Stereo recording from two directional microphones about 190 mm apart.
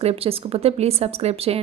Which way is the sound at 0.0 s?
30° right (ahead or behind).